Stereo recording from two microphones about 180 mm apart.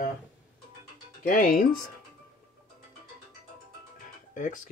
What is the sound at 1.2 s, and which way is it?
Speech, 50° left (ahead or behind).